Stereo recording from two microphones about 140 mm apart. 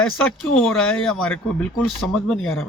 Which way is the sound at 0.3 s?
5° left (ahead or behind).